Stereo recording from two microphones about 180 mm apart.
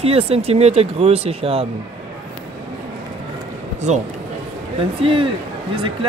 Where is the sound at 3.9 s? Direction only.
40° right (ahead or behind).